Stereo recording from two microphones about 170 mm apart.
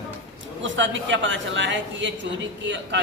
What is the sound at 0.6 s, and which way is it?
A woman's voice, 90° right.